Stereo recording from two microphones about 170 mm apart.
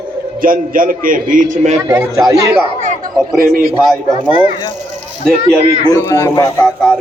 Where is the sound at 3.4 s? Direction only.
60° right (ahead or behind).